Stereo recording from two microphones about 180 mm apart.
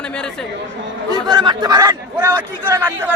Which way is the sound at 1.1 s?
25° right (ahead or behind).